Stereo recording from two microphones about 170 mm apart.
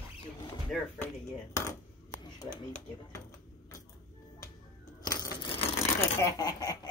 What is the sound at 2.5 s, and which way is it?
Speech, 45° left (ahead or behind).